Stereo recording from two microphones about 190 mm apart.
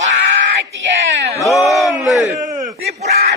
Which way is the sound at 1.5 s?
15° left (ahead or behind).